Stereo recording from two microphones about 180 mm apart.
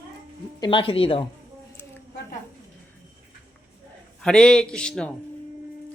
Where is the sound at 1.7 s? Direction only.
10° left (ahead or behind).